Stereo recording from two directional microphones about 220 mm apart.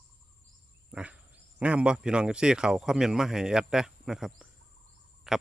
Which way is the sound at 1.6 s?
5° right (ahead or behind).